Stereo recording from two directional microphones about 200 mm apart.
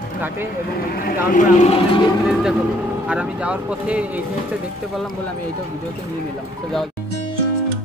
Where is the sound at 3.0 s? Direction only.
5° right (ahead or behind).